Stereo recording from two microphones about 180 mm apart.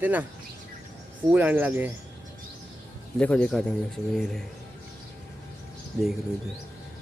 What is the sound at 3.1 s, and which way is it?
Speech, 5° left (ahead or behind).